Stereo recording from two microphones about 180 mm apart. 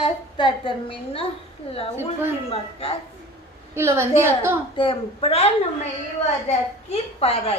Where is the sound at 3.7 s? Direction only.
15° right (ahead or behind).